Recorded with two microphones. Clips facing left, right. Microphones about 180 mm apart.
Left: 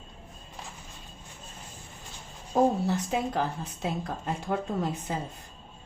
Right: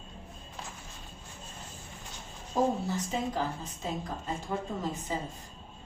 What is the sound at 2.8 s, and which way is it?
A woman's voice, 65° left (ahead or behind).